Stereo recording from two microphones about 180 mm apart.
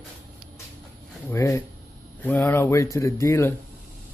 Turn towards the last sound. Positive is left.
turn(degrees=15)  # may be behind; listen again after turning